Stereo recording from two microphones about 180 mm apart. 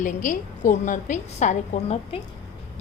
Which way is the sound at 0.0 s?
45° left (ahead or behind).